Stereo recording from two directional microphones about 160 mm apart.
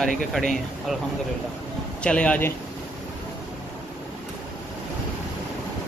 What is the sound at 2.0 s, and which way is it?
Speech, 5° left (ahead or behind).